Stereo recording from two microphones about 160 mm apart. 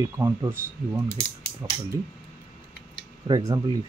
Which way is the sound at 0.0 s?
20° right (ahead or behind).